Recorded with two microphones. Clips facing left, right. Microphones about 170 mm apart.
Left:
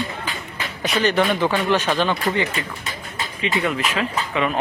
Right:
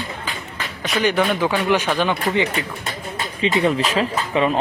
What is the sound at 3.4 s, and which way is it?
Speech, 35° right (ahead or behind).